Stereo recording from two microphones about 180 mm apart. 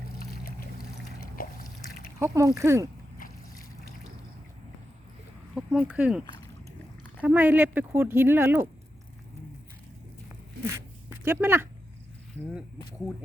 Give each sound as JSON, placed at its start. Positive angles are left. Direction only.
{"t": 0.2, "sound": "trickle", "side_deg": 55}
{"t": 2.1, "sound": "speech", "side_deg": -15}
{"t": 3.2, "sound": "boat", "side_deg": 55}
{"t": 5.5, "sound": "speech", "side_deg": -5}
{"t": 10.6, "sound": "zipper", "side_deg": -15}
{"t": 12.4, "sound": "speech", "side_deg": -10}